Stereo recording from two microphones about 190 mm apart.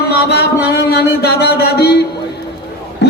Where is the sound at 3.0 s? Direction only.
65° left (ahead or behind).